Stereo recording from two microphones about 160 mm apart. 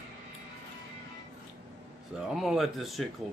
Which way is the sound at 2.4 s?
Centre (ahead or behind).